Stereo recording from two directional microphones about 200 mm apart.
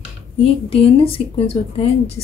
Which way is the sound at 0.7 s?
30° left (ahead or behind).